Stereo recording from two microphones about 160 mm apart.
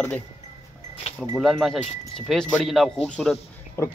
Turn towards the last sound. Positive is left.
turn(degrees=20)  # may be behind; listen again after turning